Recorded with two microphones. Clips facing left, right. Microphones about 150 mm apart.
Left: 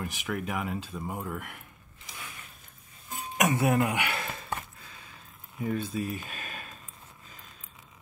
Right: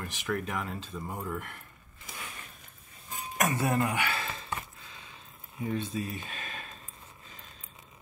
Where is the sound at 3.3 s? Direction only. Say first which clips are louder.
Left 3 dB; 15° left (ahead or behind).